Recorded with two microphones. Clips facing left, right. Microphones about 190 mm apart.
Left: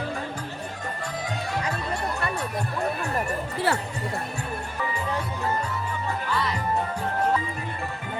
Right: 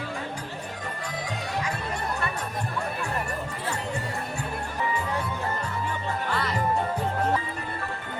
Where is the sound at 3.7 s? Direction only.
70° left (ahead or behind).